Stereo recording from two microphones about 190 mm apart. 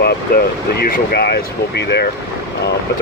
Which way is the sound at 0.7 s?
55° left (ahead or behind).